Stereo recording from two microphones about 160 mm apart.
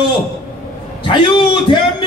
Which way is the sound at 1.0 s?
30° left (ahead or behind).